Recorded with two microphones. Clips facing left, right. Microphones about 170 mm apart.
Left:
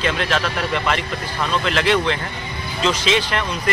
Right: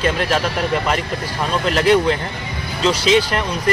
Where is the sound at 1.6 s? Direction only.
40° right (ahead or behind).